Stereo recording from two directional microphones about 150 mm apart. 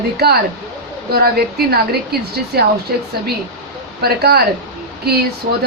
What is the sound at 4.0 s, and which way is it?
Speech, 90° right.